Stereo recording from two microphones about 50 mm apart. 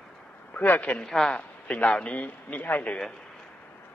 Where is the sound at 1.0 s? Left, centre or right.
Centre.